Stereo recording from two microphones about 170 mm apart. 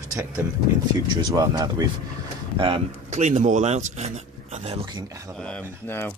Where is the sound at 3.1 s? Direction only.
45° right (ahead or behind).